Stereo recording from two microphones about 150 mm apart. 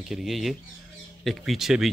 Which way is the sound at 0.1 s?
Centre (ahead or behind).